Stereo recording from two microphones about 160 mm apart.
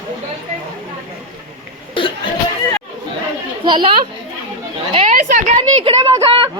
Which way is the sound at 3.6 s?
30° right (ahead or behind).